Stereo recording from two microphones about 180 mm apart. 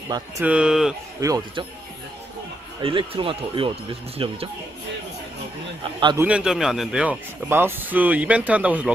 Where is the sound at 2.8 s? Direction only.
30° right (ahead or behind).